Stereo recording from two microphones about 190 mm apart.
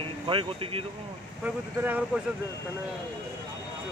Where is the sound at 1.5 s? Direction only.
5° right (ahead or behind).